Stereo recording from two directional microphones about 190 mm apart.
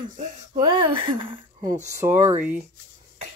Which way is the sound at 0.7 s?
25° right (ahead or behind).